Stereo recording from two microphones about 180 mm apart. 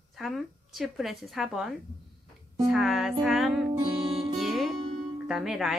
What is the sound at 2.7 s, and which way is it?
Speech, centre (ahead or behind).